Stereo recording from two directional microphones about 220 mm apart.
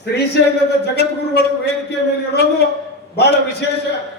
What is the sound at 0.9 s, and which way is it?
Speech, 50° left (ahead or behind).